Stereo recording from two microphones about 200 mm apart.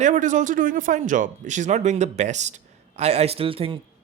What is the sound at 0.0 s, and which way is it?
A man's voice, 40° right (ahead or behind).